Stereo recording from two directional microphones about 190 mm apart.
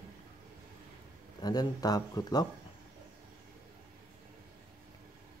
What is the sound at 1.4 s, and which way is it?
Speech, 20° left (ahead or behind).